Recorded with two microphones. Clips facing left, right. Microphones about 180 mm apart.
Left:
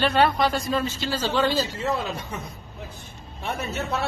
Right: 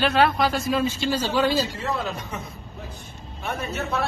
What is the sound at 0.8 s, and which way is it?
Speech, 15° right (ahead or behind).